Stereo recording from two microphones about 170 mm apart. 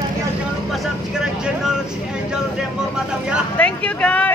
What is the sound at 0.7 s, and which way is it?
Speech, centre (ahead or behind).